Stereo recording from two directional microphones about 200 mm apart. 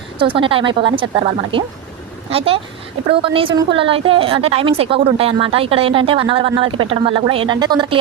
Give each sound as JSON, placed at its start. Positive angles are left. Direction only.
{"t": 0.2, "sound": "a woman's voice", "side_deg": -25}